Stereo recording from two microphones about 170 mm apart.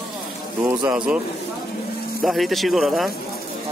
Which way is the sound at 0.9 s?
5° right (ahead or behind).